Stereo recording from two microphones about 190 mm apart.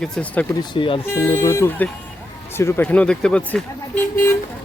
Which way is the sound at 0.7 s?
25° left (ahead or behind).